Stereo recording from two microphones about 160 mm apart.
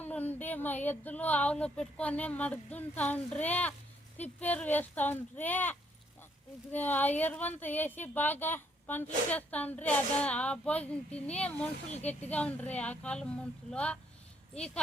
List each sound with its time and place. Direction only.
0.0 s speech: 10° left (ahead or behind)